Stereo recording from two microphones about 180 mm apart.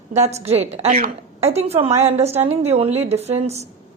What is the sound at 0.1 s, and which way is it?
A woman's voice, 40° right (ahead or behind).